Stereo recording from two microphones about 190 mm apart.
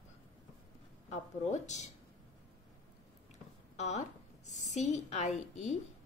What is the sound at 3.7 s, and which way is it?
A woman's voice, 35° left (ahead or behind).